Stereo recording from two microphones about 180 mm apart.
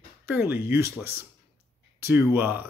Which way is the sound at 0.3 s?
10° right (ahead or behind).